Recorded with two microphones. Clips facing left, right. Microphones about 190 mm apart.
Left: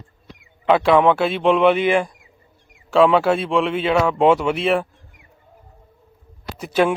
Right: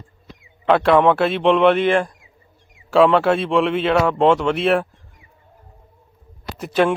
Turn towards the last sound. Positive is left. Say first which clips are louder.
# even
turn(degrees=0)  # may be behind; listen again after turning